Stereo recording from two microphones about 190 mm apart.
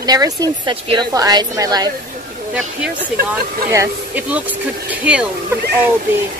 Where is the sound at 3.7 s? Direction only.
10° right (ahead or behind).